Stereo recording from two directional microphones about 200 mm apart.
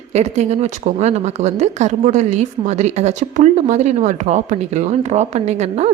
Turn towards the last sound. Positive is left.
turn(degrees=-35)  # may be behind; listen again after turning